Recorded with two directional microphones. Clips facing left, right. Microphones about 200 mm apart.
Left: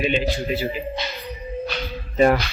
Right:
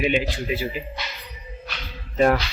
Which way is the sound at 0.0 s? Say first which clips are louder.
Left 1 dB; 10° right (ahead or behind).